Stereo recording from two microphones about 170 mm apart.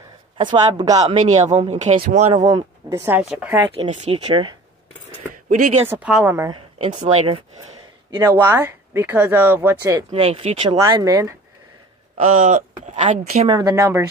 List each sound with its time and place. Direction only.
0.4 s speech: 25° right (ahead or behind)
1.6 s speech: 40° right (ahead or behind)
2.3 s speech: 20° right (ahead or behind)
3.7 s speech: 35° right (ahead or behind)
5.5 s speech: 45° right (ahead or behind)
5.9 s speech: 5° right (ahead or behind)
6.9 s speech: 45° right (ahead or behind)
8.2 s speech: 15° right (ahead or behind)
10.1 s speech: 35° right (ahead or behind)
10.8 s speech: 20° right (ahead or behind)
12.2 s speech: 50° right (ahead or behind)
13.5 s speech: 20° right (ahead or behind)